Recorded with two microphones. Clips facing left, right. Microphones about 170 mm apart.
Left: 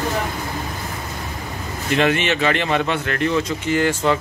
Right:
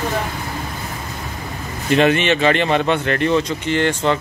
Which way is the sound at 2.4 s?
25° right (ahead or behind).